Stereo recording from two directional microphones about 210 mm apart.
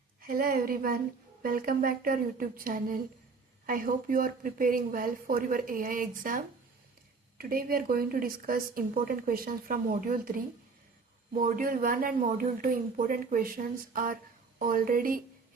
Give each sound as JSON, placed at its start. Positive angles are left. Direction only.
{"t": 0.2, "sound": "speech", "side_deg": -45}